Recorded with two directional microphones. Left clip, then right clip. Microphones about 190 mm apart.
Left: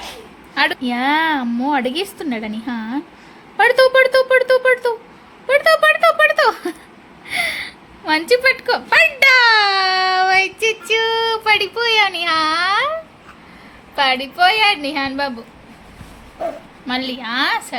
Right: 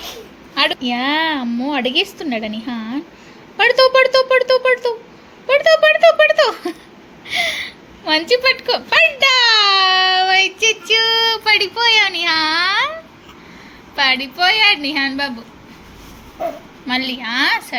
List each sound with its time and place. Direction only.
0.5 s a child's voice: 20° left (ahead or behind)
8.0 s a child's voice: 20° left (ahead or behind)
16.8 s a child's voice: 20° left (ahead or behind)